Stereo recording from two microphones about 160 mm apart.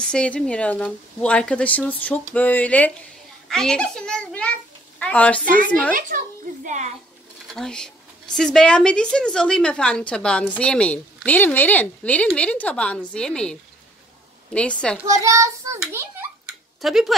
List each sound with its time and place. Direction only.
0.0 s a child's voice: 5° left (ahead or behind)
5.9 s a child's voice: 55° right (ahead or behind)
7.4 s speech: 5° left (ahead or behind)
15.1 s a child's voice: 20° right (ahead or behind)
16.8 s speech: centre (ahead or behind)